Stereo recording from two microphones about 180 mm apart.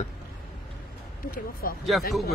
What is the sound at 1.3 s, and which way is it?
Speech, 55° left (ahead or behind).